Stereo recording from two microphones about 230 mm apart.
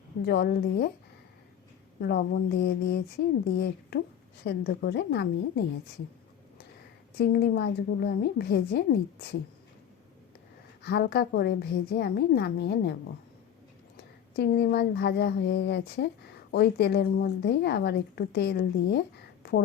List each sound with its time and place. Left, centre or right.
0.3 s a woman's voice: left
2.0 s a woman's voice: left
7.2 s a woman's voice: left
10.8 s a woman's voice: left